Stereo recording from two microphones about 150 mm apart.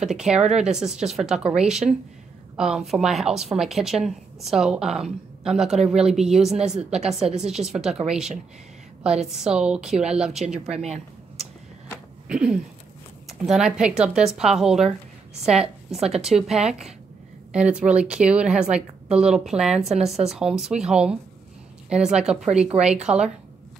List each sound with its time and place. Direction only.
0.0 s a woman's voice: 5° right (ahead or behind)
9.3 s a woman's voice: 5° right (ahead or behind)
10.7 s speech: 45° right (ahead or behind)
12.3 s a woman's voice: 5° right (ahead or behind)